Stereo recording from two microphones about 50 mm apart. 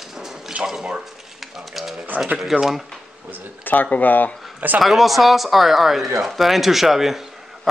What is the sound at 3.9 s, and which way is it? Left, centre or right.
Speech, left.